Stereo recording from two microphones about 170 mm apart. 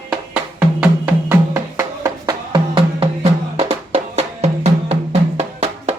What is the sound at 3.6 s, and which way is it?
Music, 40° right (ahead or behind).